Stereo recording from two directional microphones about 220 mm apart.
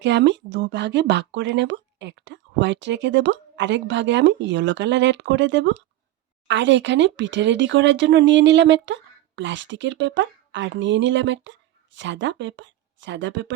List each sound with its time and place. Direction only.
0.0 s speech: 55° right (ahead or behind)